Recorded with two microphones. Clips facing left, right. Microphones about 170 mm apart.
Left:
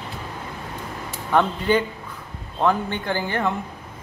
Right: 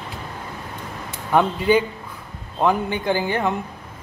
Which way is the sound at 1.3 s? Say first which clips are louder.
Right 2 dB; 10° right (ahead or behind).